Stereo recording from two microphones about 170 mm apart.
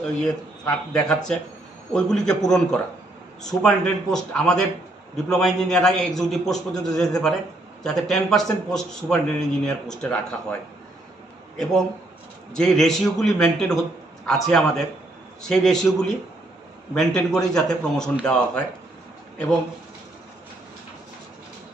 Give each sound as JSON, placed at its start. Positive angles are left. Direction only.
{"t": 0.0, "sound": "a man's voice", "side_deg": 5}